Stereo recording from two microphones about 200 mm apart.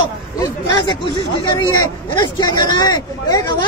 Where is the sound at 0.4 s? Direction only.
20° left (ahead or behind).